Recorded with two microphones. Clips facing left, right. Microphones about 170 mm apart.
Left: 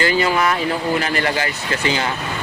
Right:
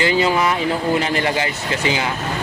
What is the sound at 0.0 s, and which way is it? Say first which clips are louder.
Speech: right 1 dB; 20° right (ahead or behind).